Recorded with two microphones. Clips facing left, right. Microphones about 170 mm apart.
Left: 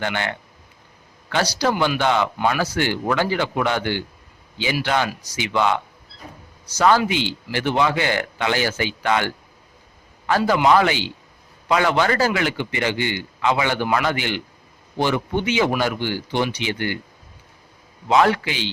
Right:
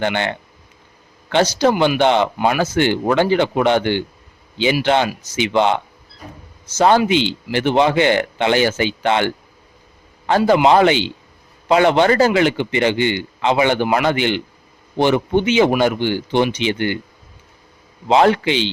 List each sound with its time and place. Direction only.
0.0 s a man's voice: 25° right (ahead or behind)
18.1 s a man's voice: 25° right (ahead or behind)